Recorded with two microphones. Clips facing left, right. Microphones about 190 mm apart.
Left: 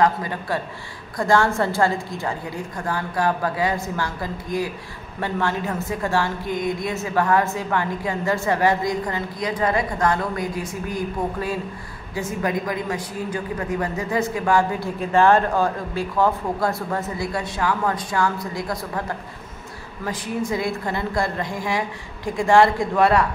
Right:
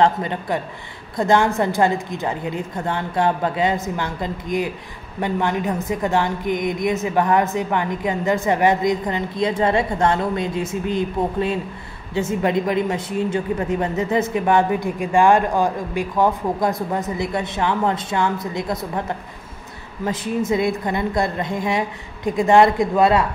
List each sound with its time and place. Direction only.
0.0 s a man's voice: 25° right (ahead or behind)